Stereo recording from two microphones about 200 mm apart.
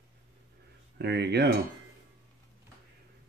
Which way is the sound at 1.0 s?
55° right (ahead or behind).